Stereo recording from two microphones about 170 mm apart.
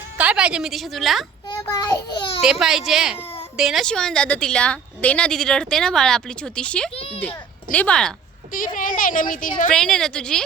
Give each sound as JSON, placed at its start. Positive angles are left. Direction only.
{"t": 0.2, "sound": "a woman's voice", "side_deg": -5}
{"t": 1.5, "sound": "a child's voice", "side_deg": 25}
{"t": 2.4, "sound": "a woman's voice", "side_deg": -5}
{"t": 6.9, "sound": "a child's voice", "side_deg": 35}
{"t": 7.2, "sound": "a child's voice", "side_deg": 10}
{"t": 8.5, "sound": "a woman's voice", "side_deg": 55}
{"t": 9.7, "sound": "a woman's voice", "side_deg": 5}